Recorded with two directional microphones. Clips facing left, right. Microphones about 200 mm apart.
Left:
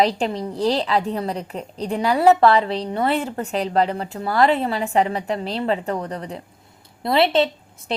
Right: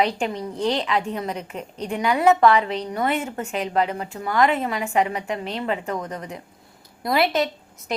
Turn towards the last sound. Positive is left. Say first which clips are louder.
# left 3 dB
turn(degrees=30)  # may be behind; listen again after turning